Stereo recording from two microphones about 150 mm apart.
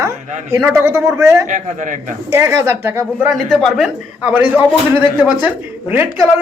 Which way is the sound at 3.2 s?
Centre (ahead or behind).